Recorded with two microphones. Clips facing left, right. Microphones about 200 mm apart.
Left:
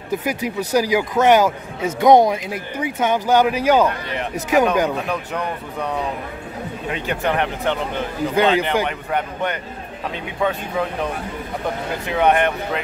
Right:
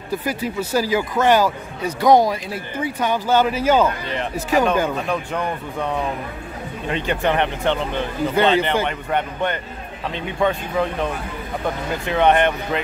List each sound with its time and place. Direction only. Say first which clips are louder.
0.1 s speech: left 1 dB; 20° left (ahead or behind)
4.8 s speech: even; 5° left (ahead or behind)
6.9 s speech: right 2 dB; 5° left (ahead or behind)
12.1 s speech: right 1 dB; 5° left (ahead or behind)